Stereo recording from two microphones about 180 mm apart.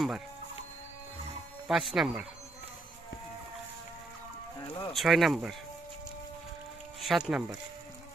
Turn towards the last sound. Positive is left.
turn(degrees=-5)  # may be behind; listen again after turning